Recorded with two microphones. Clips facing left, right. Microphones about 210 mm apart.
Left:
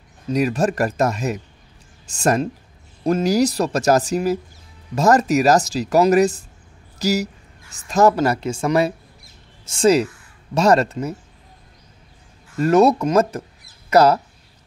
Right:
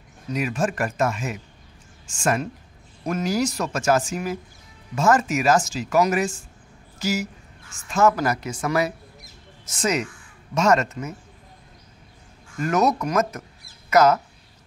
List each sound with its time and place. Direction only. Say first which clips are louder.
0.3 s speech: left 6 dB; 35° left (ahead or behind)
8.2 s speech: left 5 dB; 25° left (ahead or behind)
12.5 s speech: left 7 dB; 30° left (ahead or behind)